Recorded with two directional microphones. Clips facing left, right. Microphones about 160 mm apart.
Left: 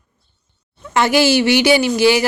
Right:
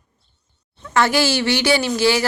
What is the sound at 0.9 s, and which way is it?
A woman's voice, 15° left (ahead or behind).